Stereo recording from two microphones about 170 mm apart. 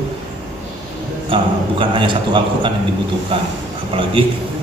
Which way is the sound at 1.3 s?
30° right (ahead or behind).